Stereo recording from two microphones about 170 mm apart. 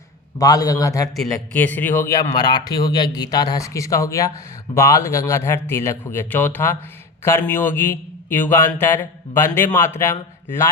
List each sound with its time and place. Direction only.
0.3 s a man's voice: 20° left (ahead or behind)